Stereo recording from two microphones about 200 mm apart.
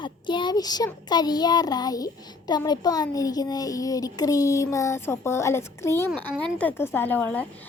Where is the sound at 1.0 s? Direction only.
20° left (ahead or behind).